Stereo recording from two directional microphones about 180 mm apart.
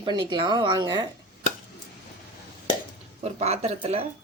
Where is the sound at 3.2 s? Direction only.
35° right (ahead or behind).